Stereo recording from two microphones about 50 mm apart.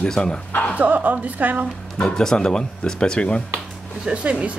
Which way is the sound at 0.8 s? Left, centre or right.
Right.